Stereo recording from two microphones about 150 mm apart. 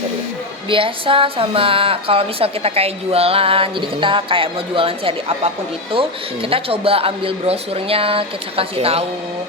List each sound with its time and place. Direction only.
0.7 s a woman's voice: 35° right (ahead or behind)